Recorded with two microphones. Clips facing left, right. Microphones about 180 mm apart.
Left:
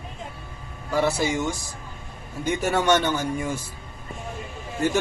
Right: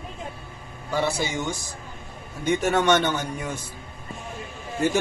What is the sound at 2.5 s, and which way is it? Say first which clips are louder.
A man's voice: right 1 dB; centre (ahead or behind).